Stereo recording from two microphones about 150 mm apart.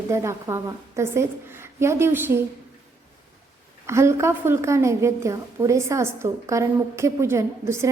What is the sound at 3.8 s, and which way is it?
A woman's voice, 20° right (ahead or behind).